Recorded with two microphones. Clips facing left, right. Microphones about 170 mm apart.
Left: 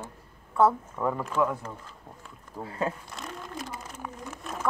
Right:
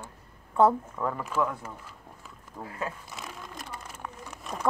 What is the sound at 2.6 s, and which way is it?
Speech, 30° left (ahead or behind).